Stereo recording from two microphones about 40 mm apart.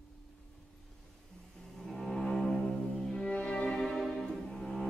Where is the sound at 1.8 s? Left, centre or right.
Centre.